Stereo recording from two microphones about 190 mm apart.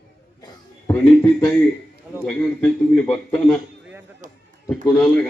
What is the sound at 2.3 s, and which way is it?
A man's voice, 5° left (ahead or behind).